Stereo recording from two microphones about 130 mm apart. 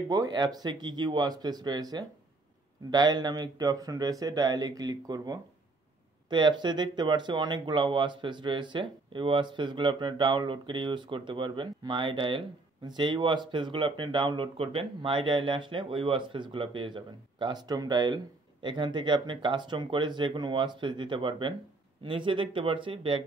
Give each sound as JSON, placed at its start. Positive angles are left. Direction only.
{"t": 0.1, "sound": "speech", "side_deg": -30}